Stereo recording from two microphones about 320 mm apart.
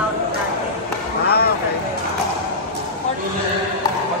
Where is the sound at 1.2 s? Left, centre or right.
Left.